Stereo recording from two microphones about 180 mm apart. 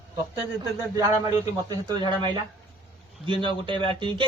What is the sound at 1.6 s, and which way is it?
Speech, 25° right (ahead or behind).